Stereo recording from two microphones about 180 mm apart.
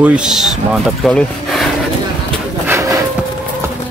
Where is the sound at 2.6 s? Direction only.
15° right (ahead or behind).